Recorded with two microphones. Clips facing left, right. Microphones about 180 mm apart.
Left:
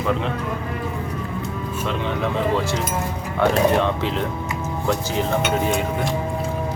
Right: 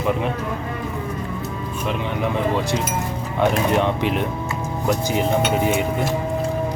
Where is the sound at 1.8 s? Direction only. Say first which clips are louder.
Even; 15° right (ahead or behind).